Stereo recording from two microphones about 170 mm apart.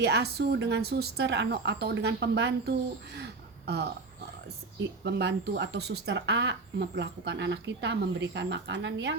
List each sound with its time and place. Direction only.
0.0 s speech: 75° right (ahead or behind)
3.7 s speech: 75° right (ahead or behind); by 9.1 s 90° right